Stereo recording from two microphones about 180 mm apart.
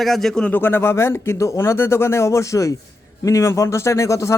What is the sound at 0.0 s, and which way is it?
Speech, centre (ahead or behind).